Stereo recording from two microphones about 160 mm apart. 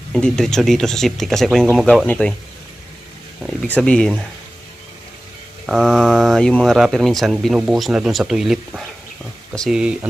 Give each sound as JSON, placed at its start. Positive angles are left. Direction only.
{"t": 0.1, "sound": "speech", "side_deg": 5}
{"t": 3.4, "sound": "speech", "side_deg": 5}
{"t": 5.6, "sound": "speech", "side_deg": 0}